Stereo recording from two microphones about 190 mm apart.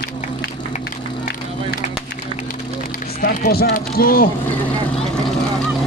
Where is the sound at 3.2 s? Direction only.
55° left (ahead or behind).